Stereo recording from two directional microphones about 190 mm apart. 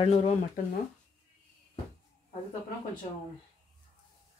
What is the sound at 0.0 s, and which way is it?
Speech, 35° left (ahead or behind).